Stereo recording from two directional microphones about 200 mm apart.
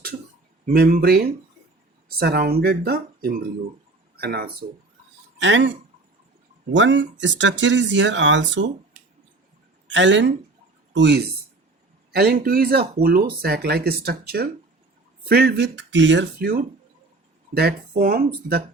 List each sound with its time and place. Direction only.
0.6 s speech: 45° right (ahead or behind)
5.4 s speech: 65° right (ahead or behind)
6.7 s speech: 65° right (ahead or behind)
9.8 s speech: 65° right (ahead or behind); by 18.3 s 45° right (ahead or behind)